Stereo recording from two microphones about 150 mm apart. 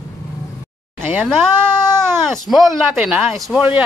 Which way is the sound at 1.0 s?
15° right (ahead or behind).